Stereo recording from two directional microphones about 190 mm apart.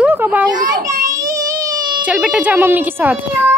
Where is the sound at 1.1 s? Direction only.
20° right (ahead or behind).